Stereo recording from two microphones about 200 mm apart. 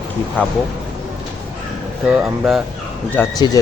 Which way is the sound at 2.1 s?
5° right (ahead or behind).